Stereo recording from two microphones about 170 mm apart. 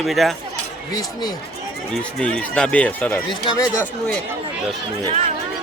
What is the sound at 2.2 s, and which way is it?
Speech, 5° left (ahead or behind).